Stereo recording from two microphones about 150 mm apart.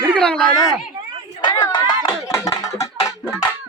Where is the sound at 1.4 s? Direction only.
30° left (ahead or behind).